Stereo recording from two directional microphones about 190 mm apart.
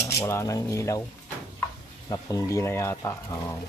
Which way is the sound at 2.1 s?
20° left (ahead or behind).